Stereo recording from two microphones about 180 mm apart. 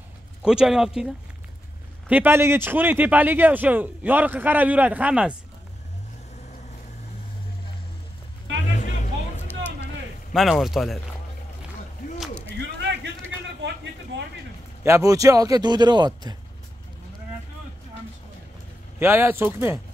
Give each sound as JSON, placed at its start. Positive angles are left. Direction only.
{"t": 0.4, "sound": "a man's voice", "side_deg": -5}
{"t": 8.6, "sound": "vehicle", "side_deg": 40}
{"t": 10.3, "sound": "speech", "side_deg": 0}
{"t": 12.2, "sound": "a sound", "side_deg": 5}
{"t": 12.5, "sound": "a sound", "side_deg": -75}
{"t": 14.8, "sound": "a man's voice", "side_deg": -15}
{"t": 18.9, "sound": "a man's voice", "side_deg": -10}